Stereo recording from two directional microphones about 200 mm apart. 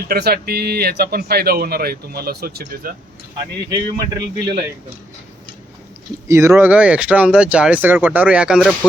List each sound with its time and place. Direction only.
0.1 s speech: 50° right (ahead or behind)
6.2 s speech: 15° right (ahead or behind)